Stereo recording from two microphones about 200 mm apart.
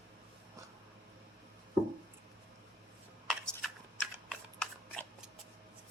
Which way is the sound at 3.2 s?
Centre (ahead or behind).